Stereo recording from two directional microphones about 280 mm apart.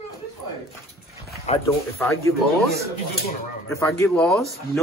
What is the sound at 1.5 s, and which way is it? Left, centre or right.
Speech, left.